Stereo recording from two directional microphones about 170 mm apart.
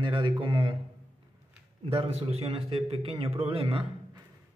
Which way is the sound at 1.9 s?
35° right (ahead or behind).